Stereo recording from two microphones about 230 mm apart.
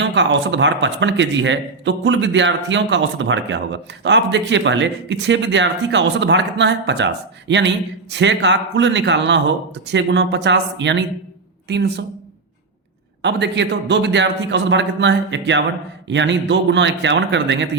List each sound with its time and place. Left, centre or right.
0.0 s a man's voice: right
13.2 s a man's voice: right